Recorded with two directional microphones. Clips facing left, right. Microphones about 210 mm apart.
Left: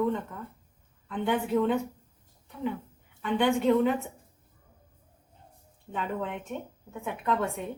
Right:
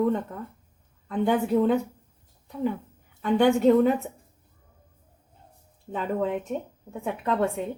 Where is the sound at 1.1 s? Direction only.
40° right (ahead or behind).